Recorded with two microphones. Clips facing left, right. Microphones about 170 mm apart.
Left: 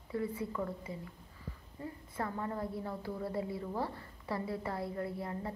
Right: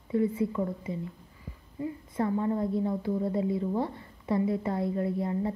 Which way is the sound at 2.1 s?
20° right (ahead or behind).